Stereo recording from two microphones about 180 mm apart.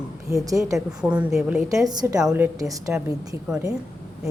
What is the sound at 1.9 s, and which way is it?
Speech, 20° right (ahead or behind).